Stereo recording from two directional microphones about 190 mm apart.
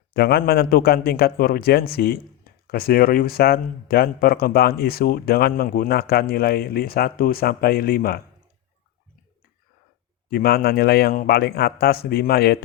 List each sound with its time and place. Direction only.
0.1 s a man's voice: 55° left (ahead or behind)
10.2 s a man's voice: 55° left (ahead or behind)